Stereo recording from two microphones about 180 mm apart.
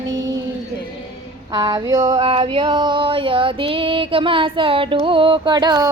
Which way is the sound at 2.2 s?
30° right (ahead or behind).